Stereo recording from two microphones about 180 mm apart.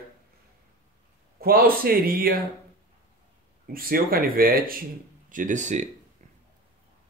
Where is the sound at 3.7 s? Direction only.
55° right (ahead or behind).